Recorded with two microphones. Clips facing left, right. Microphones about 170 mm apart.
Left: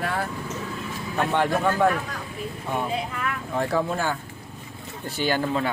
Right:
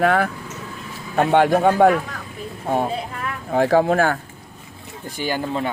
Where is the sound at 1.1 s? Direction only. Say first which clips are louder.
Right 7 dB; 70° right (ahead or behind).